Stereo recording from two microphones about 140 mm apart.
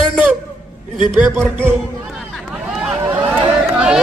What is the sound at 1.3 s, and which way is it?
Speech, 15° right (ahead or behind).